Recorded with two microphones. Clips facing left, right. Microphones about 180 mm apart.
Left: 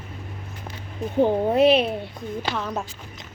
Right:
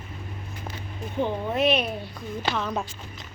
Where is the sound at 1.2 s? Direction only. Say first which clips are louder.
Left 7 dB; 40° left (ahead or behind).